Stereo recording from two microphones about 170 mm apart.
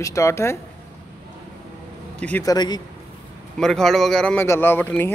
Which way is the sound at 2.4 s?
20° left (ahead or behind).